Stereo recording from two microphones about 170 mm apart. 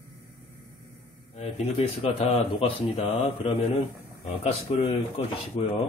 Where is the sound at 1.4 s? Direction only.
35° left (ahead or behind).